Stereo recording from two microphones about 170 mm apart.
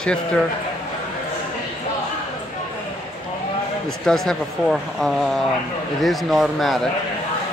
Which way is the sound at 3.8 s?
5° left (ahead or behind).